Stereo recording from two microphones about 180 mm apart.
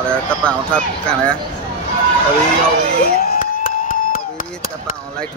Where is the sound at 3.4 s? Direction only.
50° left (ahead or behind).